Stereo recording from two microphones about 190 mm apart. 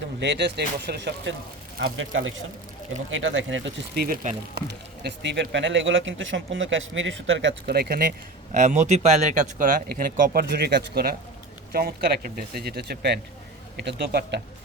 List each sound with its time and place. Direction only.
0.2 s speech: 65° right (ahead or behind)
2.0 s speech: 90° right
4.0 s speech: 45° right (ahead or behind)
4.5 s speech: 60° right (ahead or behind)
8.5 s speech: 40° right (ahead or behind); by 14.4 s 60° right (ahead or behind)